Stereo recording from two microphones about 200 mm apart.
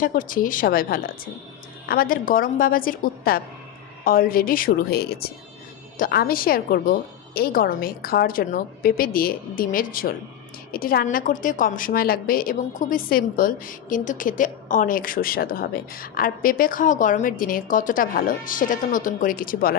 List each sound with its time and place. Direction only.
0.0 s a woman's voice: 45° left (ahead or behind)